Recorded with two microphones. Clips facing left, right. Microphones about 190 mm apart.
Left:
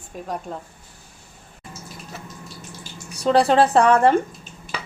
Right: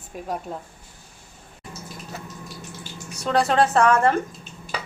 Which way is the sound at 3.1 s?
30° left (ahead or behind).